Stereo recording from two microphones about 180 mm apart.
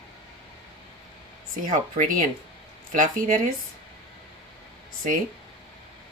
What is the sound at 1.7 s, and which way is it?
Speech, 45° right (ahead or behind).